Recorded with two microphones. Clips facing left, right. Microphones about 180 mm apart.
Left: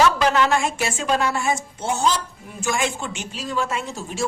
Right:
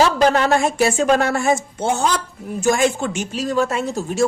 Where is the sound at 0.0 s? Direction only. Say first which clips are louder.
Right 3 dB; 35° right (ahead or behind); by 2.1 s 55° right (ahead or behind).